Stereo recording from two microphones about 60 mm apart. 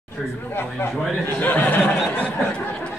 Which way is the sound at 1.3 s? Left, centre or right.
Left.